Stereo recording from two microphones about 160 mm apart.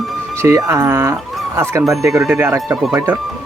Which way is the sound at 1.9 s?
Centre (ahead or behind).